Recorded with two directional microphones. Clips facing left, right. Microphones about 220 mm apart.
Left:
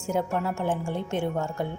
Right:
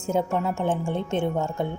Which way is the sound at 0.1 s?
20° right (ahead or behind).